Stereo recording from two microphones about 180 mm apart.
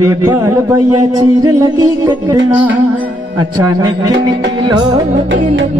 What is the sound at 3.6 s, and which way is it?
Speech, 20° right (ahead or behind).